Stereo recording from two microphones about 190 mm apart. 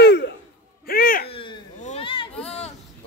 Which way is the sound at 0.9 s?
50° left (ahead or behind).